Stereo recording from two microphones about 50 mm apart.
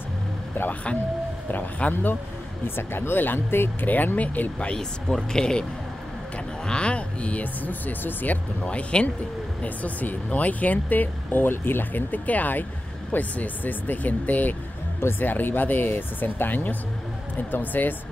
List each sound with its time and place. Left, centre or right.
1.5 s speech: left
2.6 s speech: left
3.8 s speech: left
4.7 s speech: centre
6.7 s speech: left
8.6 s speech: left